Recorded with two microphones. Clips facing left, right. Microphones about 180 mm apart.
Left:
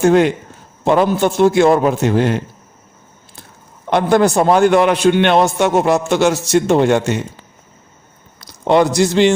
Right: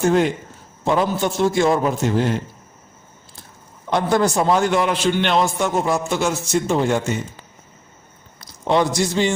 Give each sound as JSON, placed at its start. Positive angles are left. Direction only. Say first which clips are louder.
{"t": 0.0, "sound": "a man's voice", "louder": "left 5 dB", "side_deg": 70}
{"t": 3.8, "sound": "a man's voice", "louder": "left 5 dB", "side_deg": 65}
{"t": 8.4, "sound": "a man's voice", "louder": "left 5 dB", "side_deg": 65}